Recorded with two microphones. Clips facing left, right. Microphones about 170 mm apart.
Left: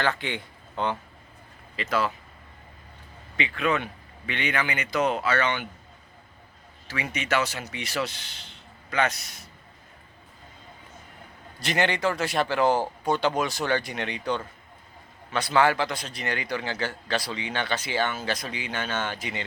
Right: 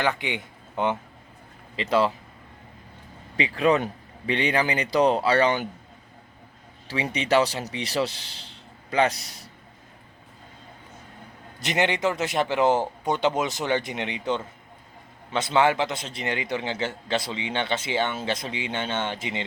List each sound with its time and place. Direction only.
0.0 s a man's voice: 15° right (ahead or behind)
3.3 s speech: 35° right (ahead or behind)
6.8 s speech: 30° right (ahead or behind)
11.6 s a man's voice: 20° right (ahead or behind)